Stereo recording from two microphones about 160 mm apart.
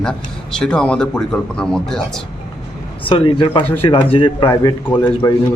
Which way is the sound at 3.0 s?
30° left (ahead or behind).